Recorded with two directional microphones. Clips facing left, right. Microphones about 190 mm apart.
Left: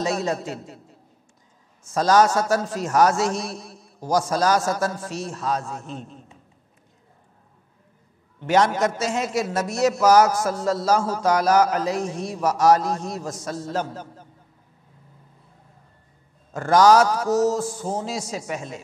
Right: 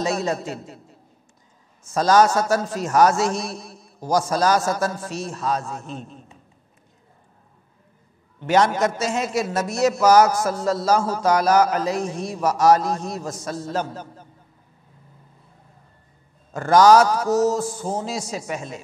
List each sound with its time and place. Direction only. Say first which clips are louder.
0.0 s a man's voice: right 1 dB; 10° right (ahead or behind)
2.0 s a man's voice: right 1 dB; 10° right (ahead or behind)
2.2 s a man's voice: right 1 dB; 20° right (ahead or behind)
3.1 s a man's voice: right 1 dB; 10° right (ahead or behind)
3.6 s a man's voice: right 1 dB; 25° right (ahead or behind)
8.5 s a man's voice: right 1 dB; 10° right (ahead or behind)
10.3 s a man's voice: right 1 dB; 25° right (ahead or behind)
11.2 s a man's voice: right 1 dB; 10° right (ahead or behind)
12.4 s a man's voice: right 1 dB; 25° right (ahead or behind)
16.7 s a man's voice: right 2 dB; 10° right (ahead or behind)
17.0 s a man's voice: right 1 dB; 25° right (ahead or behind)
18.0 s a man's voice: right 1 dB; 10° right (ahead or behind)